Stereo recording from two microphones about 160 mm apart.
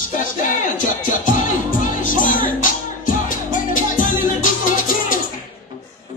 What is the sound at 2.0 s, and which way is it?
Music, 55° left (ahead or behind).